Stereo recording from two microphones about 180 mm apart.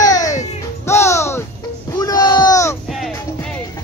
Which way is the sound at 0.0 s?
20° left (ahead or behind).